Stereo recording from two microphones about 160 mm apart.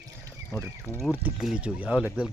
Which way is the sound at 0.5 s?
20° left (ahead or behind).